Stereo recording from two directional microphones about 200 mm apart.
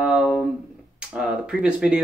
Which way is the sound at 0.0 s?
5° right (ahead or behind).